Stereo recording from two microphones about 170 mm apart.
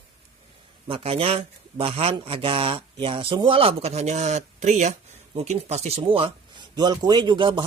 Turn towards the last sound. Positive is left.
turn(degrees=-30)  # may be behind; listen again after turning